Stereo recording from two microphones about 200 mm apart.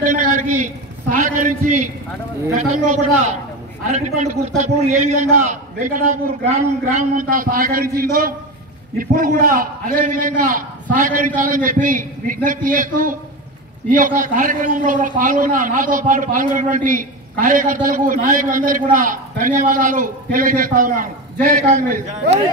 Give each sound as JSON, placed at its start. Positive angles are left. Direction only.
{"t": 0.0, "sound": "a man's voice", "side_deg": -40}